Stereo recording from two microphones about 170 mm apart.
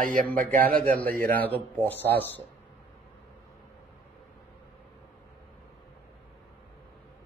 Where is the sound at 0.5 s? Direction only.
10° left (ahead or behind).